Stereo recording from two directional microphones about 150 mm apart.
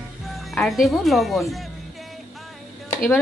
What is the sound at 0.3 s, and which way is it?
Speech, centre (ahead or behind).